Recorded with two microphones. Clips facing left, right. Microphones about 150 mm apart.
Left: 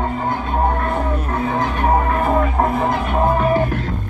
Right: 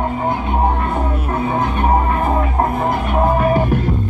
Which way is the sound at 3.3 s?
15° right (ahead or behind).